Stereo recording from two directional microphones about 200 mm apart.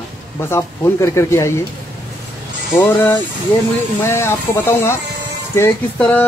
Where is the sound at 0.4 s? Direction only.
15° left (ahead or behind).